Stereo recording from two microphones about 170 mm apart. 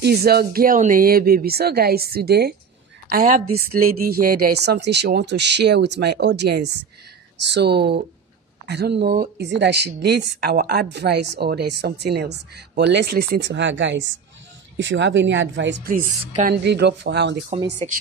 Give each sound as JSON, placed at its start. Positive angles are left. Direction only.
{"t": 0.0, "sound": "speech", "side_deg": -65}
{"t": 3.1, "sound": "speech", "side_deg": -55}
{"t": 7.5, "sound": "speech", "side_deg": -75}
{"t": 15.9, "sound": "speech", "side_deg": -55}
{"t": 16.5, "sound": "speech", "side_deg": -80}